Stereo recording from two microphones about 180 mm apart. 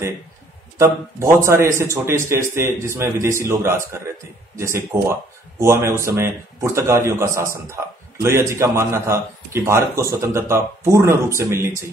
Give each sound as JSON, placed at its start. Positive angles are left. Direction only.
{"t": 0.7, "sound": "a man's voice", "side_deg": -15}